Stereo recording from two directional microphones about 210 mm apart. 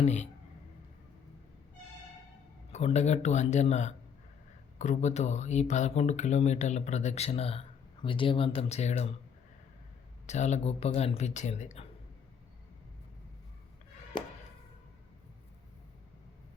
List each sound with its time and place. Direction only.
0.0 s speech: 35° left (ahead or behind)
2.7 s speech: 30° left (ahead or behind)
10.2 s speech: 35° left (ahead or behind)